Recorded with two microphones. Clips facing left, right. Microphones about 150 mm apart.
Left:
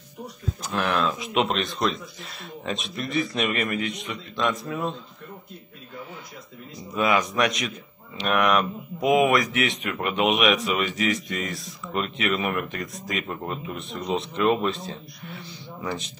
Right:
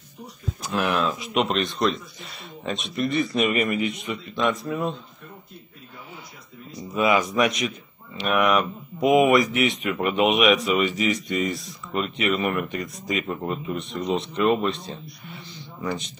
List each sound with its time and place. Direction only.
0.7 s speech: centre (ahead or behind)
7.0 s speech: centre (ahead or behind)